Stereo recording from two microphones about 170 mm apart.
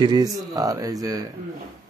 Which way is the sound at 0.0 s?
25° right (ahead or behind).